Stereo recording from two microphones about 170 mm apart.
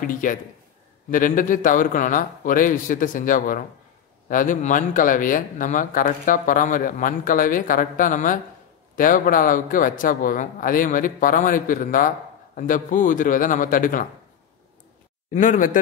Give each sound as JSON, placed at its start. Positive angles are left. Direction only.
{"t": 0.0, "sound": "speech", "side_deg": 50}
{"t": 15.3, "sound": "speech", "side_deg": 50}